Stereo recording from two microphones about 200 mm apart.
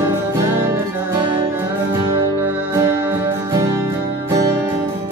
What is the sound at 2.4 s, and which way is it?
Music, 10° right (ahead or behind).